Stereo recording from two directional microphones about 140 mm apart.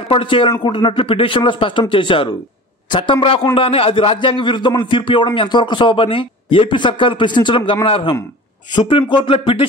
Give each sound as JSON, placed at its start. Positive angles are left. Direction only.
{"t": 0.1, "sound": "a man's voice", "side_deg": 40}